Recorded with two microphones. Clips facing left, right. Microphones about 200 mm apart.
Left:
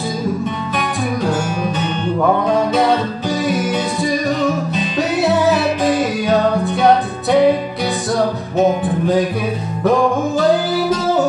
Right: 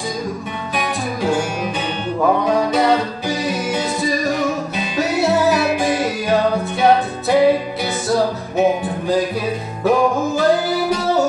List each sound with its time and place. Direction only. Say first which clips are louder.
0.7 s music: left 1 dB; 10° right (ahead or behind)
8.8 s music: left 3 dB; centre (ahead or behind)